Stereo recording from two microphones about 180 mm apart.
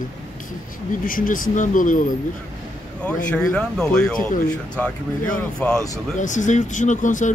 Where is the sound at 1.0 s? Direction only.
50° left (ahead or behind).